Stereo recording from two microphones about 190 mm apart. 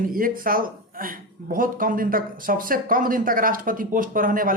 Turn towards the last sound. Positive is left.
turn(degrees=-45)  # may be behind; listen again after turning